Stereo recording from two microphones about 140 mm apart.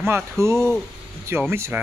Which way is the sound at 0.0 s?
20° right (ahead or behind).